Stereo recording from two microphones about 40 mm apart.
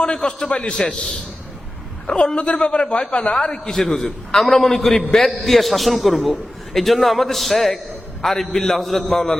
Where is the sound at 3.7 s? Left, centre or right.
Centre.